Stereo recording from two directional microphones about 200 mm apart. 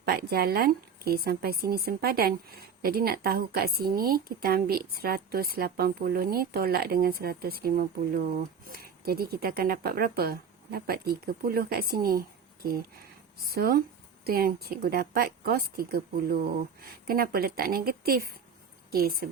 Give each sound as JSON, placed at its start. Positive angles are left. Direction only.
{"t": 0.0, "sound": "a woman's voice", "side_deg": -50}
{"t": 13.4, "sound": "a woman's voice", "side_deg": -50}